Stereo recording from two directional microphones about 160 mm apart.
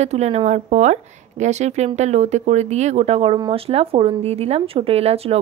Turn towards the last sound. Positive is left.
turn(degrees=-40)  # may be behind; listen again after turning